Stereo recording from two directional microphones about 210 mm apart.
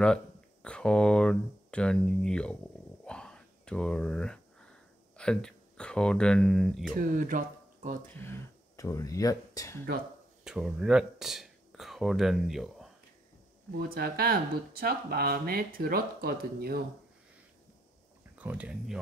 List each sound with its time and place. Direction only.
0.0 s speech: 5° left (ahead or behind)
3.1 s whispering: 5° left (ahead or behind)
5.1 s speech: 5° left (ahead or behind)
7.0 s speech: 40° right (ahead or behind)
8.1 s speech: 10° left (ahead or behind)
10.4 s speech: 5° right (ahead or behind)
13.7 s speech: 45° right (ahead or behind)
18.4 s speech: 5° right (ahead or behind)